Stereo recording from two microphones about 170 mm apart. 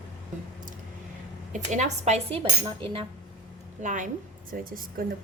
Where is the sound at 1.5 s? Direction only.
45° right (ahead or behind); by 3.0 s 30° right (ahead or behind).